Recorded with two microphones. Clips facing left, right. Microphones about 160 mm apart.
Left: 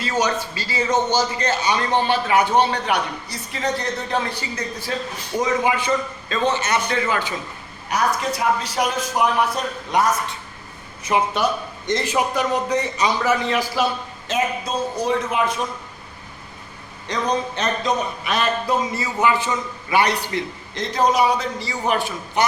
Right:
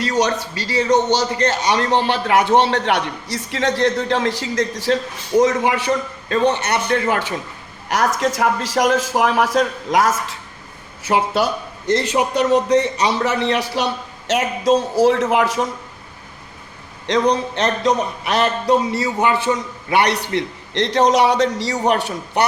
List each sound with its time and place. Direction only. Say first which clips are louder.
0.0 s a man's voice: right 3 dB; 70° right (ahead or behind); by 4.9 s 85° right
5.4 s a man's voice: right 4 dB; 75° right (ahead or behind)
7.9 s a man's voice: right 3 dB; 85° right
11.9 s a man's voice: right 3 dB; 75° right (ahead or behind)
17.1 s a man's voice: right 6 dB; 75° right (ahead or behind)